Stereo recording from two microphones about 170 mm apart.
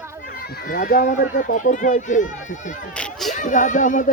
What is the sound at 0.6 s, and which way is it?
Speech, 60° left (ahead or behind).